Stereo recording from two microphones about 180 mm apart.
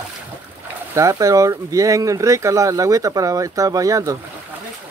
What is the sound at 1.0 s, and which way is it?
Speech, 15° right (ahead or behind).